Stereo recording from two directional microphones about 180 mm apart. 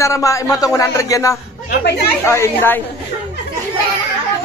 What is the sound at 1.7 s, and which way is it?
Speech, 70° left (ahead or behind).